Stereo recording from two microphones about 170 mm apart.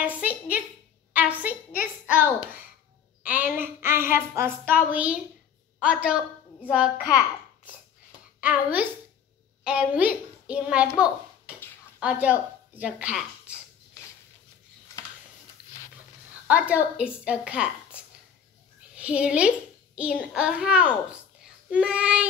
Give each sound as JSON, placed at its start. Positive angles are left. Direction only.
{"t": 0.2, "sound": "a sound", "side_deg": -10}
{"t": 1.1, "sound": "a woman's voice", "side_deg": -10}
{"t": 7.0, "sound": "a child's voice", "side_deg": 20}
{"t": 8.4, "sound": "a child's voice", "side_deg": -10}
{"t": 16.4, "sound": "a woman's voice", "side_deg": -10}